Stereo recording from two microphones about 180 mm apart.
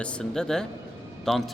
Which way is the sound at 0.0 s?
5° left (ahead or behind).